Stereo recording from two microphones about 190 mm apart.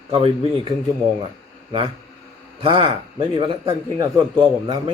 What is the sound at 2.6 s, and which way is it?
A man's voice, 30° right (ahead or behind).